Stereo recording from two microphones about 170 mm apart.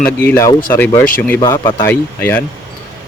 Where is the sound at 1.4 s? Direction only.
25° left (ahead or behind).